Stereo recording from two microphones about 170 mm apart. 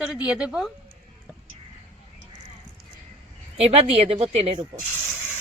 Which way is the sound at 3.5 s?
35° right (ahead or behind).